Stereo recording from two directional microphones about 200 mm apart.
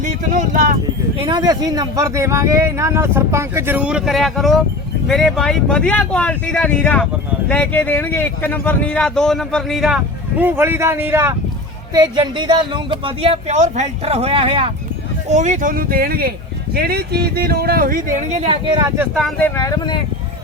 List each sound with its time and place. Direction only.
1.2 s speech: 20° right (ahead or behind)
18.9 s speech: centre (ahead or behind)
19.4 s speech: 15° left (ahead or behind)